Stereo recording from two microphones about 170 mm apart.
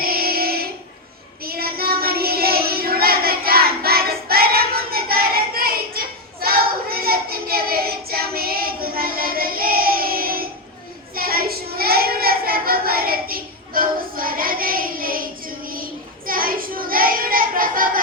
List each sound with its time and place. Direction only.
0.0 s child singing: 60° right (ahead or behind)